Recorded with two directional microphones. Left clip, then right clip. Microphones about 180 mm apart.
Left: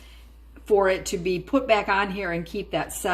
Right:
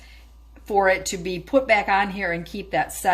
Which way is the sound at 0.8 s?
25° right (ahead or behind).